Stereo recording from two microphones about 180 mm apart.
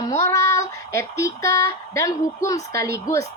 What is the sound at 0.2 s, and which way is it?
Child singing, 15° left (ahead or behind).